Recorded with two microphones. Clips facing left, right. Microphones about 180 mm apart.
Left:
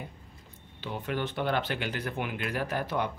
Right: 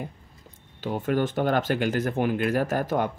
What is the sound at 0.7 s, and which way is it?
Speech, 45° right (ahead or behind).